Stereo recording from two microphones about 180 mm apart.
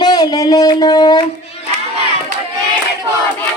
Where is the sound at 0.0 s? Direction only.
20° left (ahead or behind).